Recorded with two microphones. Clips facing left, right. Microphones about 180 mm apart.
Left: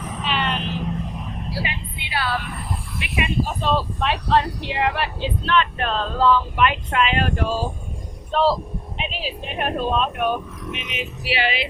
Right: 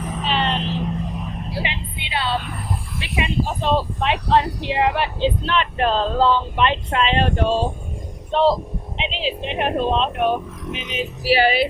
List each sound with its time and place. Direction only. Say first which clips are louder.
0.3 s vehicle: right 2 dB; 35° right (ahead or behind)
1.6 s music: right 2 dB; 20° right (ahead or behind)
3.0 s speech: even; 20° right (ahead or behind); by 11.6 s 40° right (ahead or behind)